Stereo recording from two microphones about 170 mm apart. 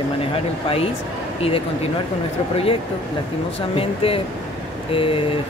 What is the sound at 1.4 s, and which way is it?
Speech, 35° left (ahead or behind).